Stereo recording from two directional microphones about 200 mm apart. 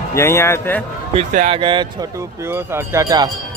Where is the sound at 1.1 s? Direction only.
35° right (ahead or behind).